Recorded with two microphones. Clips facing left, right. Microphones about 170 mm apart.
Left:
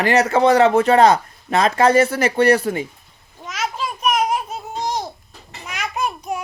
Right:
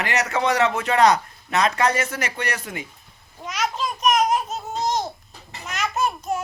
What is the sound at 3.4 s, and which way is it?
Babbling, 5° left (ahead or behind).